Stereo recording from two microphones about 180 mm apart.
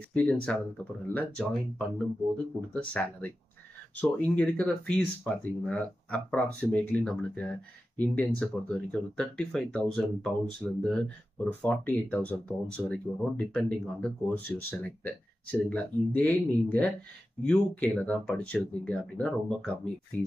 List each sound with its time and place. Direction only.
0.1 s speech: 5° left (ahead or behind)